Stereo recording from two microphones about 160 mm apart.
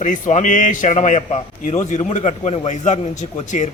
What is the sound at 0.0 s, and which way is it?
A man's voice, 50° left (ahead or behind).